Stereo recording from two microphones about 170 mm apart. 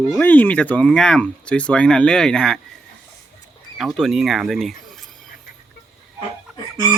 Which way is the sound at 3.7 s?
Centre (ahead or behind).